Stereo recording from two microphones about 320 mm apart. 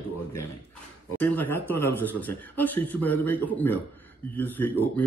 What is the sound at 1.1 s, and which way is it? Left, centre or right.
Speech, centre.